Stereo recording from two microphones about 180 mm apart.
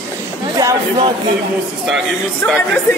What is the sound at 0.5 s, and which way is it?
Speech, 25° right (ahead or behind).